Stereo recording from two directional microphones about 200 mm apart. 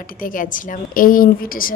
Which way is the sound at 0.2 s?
40° left (ahead or behind).